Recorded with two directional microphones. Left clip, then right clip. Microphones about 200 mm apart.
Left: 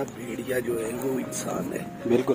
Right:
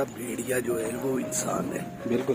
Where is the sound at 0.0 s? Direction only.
20° right (ahead or behind).